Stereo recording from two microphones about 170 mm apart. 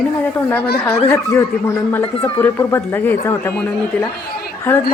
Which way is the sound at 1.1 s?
15° left (ahead or behind).